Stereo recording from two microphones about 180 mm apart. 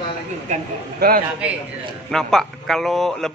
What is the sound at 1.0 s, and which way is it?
Speech, 60° right (ahead or behind).